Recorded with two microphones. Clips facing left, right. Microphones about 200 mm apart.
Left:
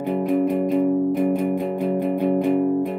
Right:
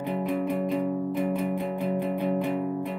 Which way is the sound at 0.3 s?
45° left (ahead or behind).